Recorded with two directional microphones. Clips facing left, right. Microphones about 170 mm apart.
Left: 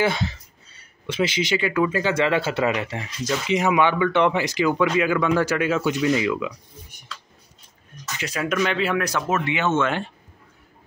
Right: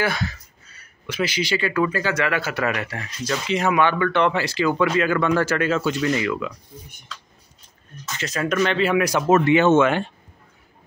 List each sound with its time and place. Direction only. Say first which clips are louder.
0.0 s speech: left 2 dB; 25° left (ahead or behind)
8.2 s speech: right 2 dB; 10° left (ahead or behind)
8.9 s speech: right 4 dB; 10° right (ahead or behind)
9.3 s speech: right 10 dB; 40° right (ahead or behind)
9.8 s speech: right 5 dB; 5° right (ahead or behind)